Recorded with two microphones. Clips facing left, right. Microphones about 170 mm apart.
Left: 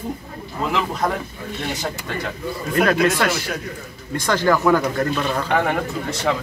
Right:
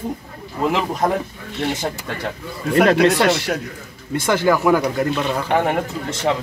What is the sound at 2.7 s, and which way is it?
Speech, 30° right (ahead or behind).